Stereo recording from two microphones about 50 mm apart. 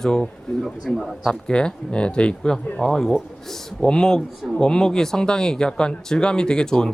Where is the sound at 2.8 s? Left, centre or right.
Centre.